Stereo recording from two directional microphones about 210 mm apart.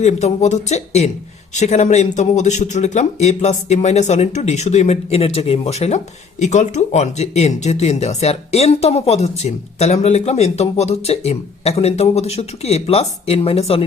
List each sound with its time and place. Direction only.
0.0 s speech: 35° left (ahead or behind)